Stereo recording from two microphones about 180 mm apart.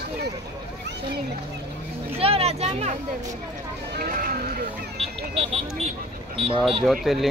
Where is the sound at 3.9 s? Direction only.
50° right (ahead or behind).